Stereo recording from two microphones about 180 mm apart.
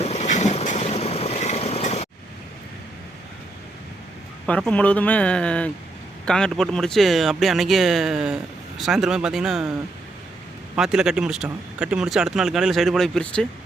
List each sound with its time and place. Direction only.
0.0 s boat: 40° left (ahead or behind)
4.4 s speech: 5° left (ahead or behind)
10.8 s speech: 5° right (ahead or behind)